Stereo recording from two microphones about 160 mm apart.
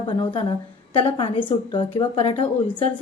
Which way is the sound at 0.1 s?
30° left (ahead or behind).